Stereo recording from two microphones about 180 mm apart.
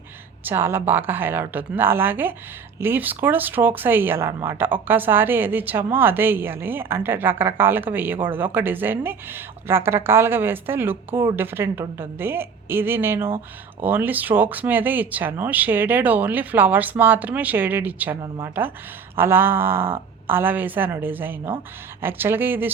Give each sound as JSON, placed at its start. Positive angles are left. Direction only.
{"t": 0.4, "sound": "speech", "side_deg": -10}
{"t": 18.2, "sound": "speech", "side_deg": -20}